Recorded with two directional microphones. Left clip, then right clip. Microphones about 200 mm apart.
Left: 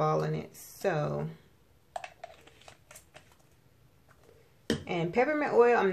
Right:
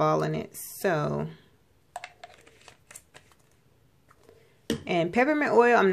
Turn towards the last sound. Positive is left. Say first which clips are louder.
# right 4 dB
turn(degrees=-40)  # may be behind; listen again after turning